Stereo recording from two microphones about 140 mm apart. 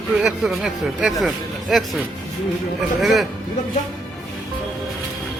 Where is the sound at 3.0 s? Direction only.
Centre (ahead or behind).